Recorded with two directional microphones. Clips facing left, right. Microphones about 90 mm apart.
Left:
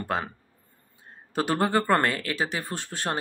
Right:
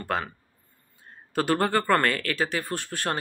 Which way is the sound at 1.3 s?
20° left (ahead or behind).